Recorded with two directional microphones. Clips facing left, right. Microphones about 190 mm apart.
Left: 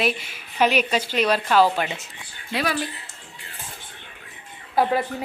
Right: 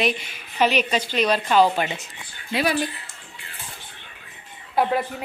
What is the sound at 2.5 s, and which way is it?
Speech, 10° right (ahead or behind).